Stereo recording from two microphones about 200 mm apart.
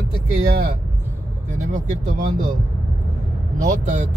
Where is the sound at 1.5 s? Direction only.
40° right (ahead or behind).